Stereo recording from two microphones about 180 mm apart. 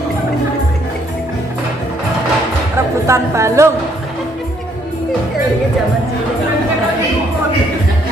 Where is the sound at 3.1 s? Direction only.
15° right (ahead or behind).